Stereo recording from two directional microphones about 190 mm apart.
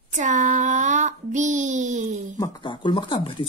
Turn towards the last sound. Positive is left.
turn(degrees=30)  # may be behind; listen again after turning